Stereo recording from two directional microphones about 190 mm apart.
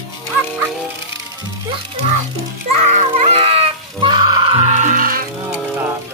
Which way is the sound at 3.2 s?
30° right (ahead or behind).